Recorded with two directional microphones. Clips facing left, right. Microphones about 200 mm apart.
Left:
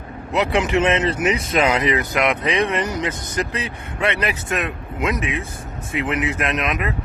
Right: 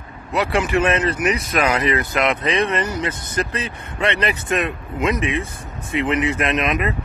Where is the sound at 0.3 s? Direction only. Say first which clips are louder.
Left 1 dB; 20° left (ahead or behind).